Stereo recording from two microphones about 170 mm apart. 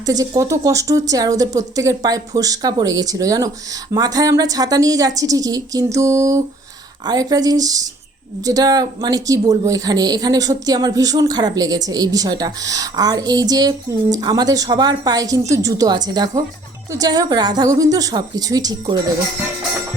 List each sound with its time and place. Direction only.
0.0 s speech: 20° right (ahead or behind)